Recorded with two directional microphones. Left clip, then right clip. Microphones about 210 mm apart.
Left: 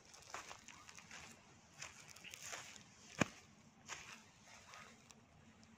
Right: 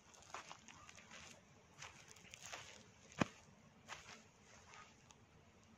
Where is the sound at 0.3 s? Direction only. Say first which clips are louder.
Left 2 dB; 35° left (ahead or behind).